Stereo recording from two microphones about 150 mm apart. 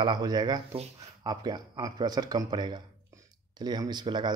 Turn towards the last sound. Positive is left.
turn(degrees=-30)  # may be behind; listen again after turning